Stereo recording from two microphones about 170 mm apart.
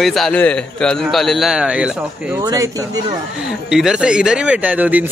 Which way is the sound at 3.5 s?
5° right (ahead or behind).